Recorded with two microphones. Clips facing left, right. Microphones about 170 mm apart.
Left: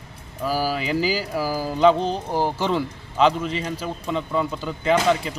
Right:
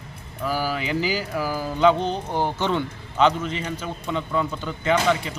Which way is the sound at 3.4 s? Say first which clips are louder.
Left 2 dB; 35° left (ahead or behind).